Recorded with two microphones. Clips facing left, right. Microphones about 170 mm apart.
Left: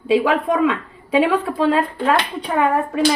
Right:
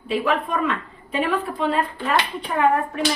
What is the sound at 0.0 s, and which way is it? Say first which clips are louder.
A woman's voice: left 6 dB; 90° left.